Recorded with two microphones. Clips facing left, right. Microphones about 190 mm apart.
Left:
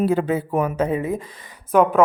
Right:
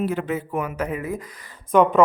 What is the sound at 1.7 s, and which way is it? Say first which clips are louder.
Speech: even; 5° left (ahead or behind).